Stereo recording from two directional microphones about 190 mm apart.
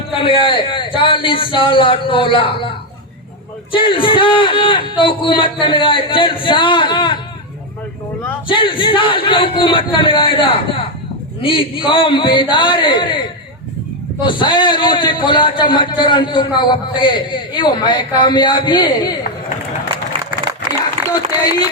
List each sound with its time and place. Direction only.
0.1 s a man's voice: 25° left (ahead or behind)
8.4 s a man's voice: 25° left (ahead or behind)
21.1 s a sound: 20° left (ahead or behind)